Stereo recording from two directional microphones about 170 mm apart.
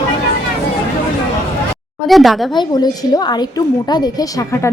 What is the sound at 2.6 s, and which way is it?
A woman's voice, 25° left (ahead or behind).